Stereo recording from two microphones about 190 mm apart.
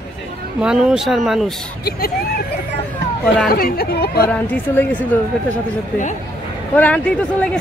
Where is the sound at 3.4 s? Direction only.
55° left (ahead or behind).